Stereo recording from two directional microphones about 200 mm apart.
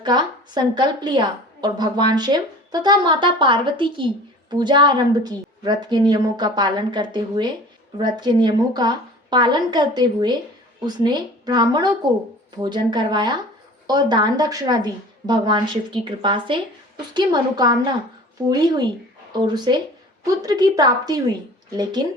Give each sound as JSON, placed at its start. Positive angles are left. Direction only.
{"t": 0.0, "sound": "a woman's voice", "side_deg": -20}